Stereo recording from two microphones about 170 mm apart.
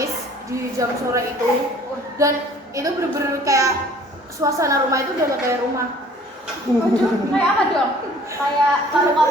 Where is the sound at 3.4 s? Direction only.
20° right (ahead or behind).